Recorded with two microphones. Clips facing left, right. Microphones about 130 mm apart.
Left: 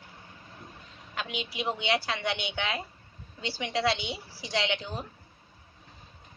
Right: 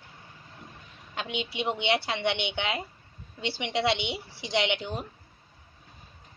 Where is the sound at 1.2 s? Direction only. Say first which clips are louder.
Right 2 dB; 25° right (ahead or behind).